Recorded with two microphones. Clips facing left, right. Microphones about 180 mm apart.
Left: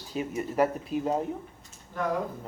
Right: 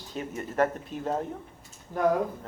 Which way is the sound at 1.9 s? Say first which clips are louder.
Right 4 dB; 40° right (ahead or behind).